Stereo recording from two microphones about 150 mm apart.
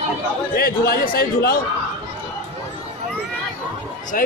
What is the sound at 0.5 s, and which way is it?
A man's voice, 90° left.